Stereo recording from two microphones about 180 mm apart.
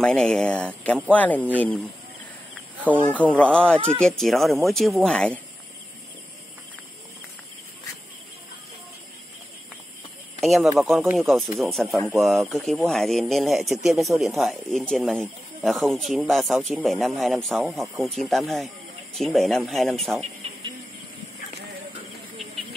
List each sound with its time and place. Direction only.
0.0 s a man's voice: 5° left (ahead or behind)
3.1 s a man's voice: 5° left (ahead or behind)
10.4 s a man's voice: centre (ahead or behind)
20.2 s a sound: 35° right (ahead or behind)